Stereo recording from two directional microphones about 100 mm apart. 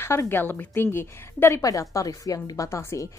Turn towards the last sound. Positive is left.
turn(degrees=30)  # may be behind; listen again after turning